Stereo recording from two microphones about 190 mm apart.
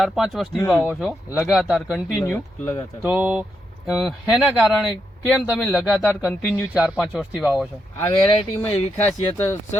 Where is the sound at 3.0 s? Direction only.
5° right (ahead or behind).